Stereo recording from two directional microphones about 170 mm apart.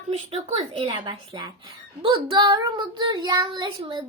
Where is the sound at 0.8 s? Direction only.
30° right (ahead or behind).